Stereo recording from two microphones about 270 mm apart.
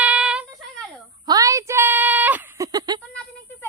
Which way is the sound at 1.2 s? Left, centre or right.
Centre.